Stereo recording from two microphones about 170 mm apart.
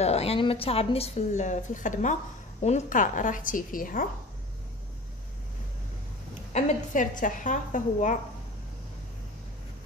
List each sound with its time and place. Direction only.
0.0 s a woman's voice: 35° left (ahead or behind); by 4.1 s 55° left (ahead or behind)
6.5 s a woman's voice: 50° left (ahead or behind)